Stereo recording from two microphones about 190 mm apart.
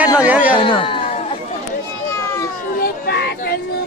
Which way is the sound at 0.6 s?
25° left (ahead or behind).